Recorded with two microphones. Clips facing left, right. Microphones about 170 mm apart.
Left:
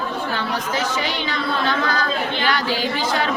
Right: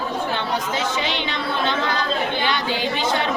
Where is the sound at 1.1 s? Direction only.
20° right (ahead or behind).